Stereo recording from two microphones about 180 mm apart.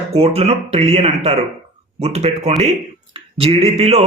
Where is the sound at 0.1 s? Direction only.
35° right (ahead or behind).